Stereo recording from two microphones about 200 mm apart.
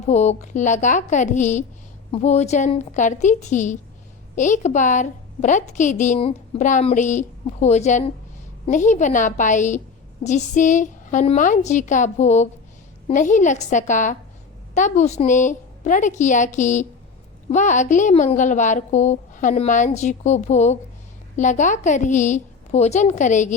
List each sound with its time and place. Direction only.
0.1 s a woman's voice: 35° left (ahead or behind)